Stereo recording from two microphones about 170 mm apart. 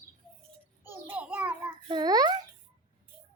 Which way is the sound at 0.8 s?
10° right (ahead or behind).